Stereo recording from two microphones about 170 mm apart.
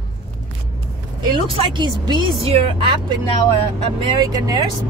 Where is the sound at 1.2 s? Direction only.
30° right (ahead or behind).